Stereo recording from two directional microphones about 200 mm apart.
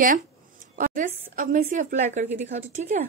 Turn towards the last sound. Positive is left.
turn(degrees=-35)  # may be behind; listen again after turning